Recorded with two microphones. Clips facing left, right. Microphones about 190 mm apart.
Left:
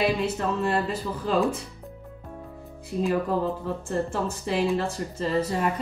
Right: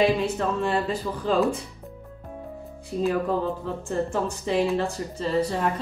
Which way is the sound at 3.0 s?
Centre (ahead or behind).